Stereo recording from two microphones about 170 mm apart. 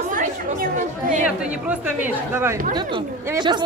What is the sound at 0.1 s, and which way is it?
Chatter, 55° right (ahead or behind).